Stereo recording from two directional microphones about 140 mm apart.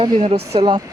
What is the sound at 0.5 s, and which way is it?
Speech, 35° right (ahead or behind).